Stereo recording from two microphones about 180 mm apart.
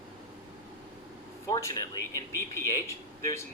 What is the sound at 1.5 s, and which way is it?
Speech, 20° left (ahead or behind).